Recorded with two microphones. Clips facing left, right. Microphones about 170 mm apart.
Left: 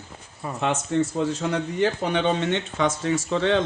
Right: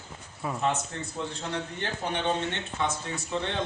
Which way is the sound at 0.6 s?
90° left.